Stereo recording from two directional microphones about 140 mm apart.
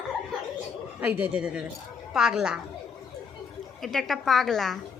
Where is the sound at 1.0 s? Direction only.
10° right (ahead or behind).